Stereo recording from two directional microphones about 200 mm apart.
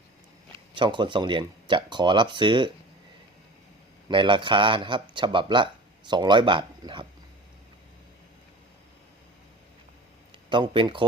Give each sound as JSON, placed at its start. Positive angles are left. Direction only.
{"t": 0.7, "sound": "speech", "side_deg": -25}
{"t": 4.1, "sound": "speech", "side_deg": -25}
{"t": 10.5, "sound": "speech", "side_deg": -25}